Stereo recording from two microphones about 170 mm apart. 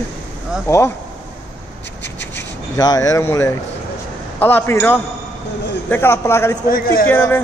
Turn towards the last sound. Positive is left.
turn(degrees=10)  # may be behind; listen again after turning